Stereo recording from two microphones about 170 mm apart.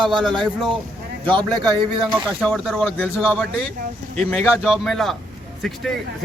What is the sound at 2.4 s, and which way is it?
Speech, centre (ahead or behind).